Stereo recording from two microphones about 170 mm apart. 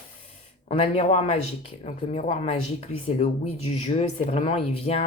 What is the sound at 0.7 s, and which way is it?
Speech, 35° left (ahead or behind).